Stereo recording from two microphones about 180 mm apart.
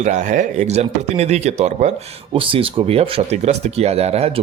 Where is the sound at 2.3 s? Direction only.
30° right (ahead or behind).